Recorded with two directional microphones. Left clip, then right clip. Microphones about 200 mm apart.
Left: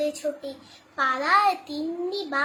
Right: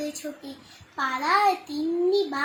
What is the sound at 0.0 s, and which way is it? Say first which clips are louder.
A child's voice: left 7 dB; 10° left (ahead or behind).